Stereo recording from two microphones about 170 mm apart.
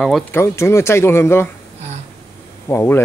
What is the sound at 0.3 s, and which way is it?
Speech, 15° left (ahead or behind).